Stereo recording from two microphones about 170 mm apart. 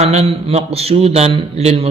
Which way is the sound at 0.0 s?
40° right (ahead or behind).